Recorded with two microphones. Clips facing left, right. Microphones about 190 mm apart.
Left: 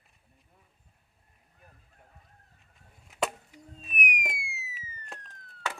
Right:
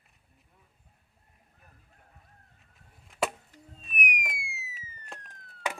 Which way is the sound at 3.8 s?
Centre (ahead or behind).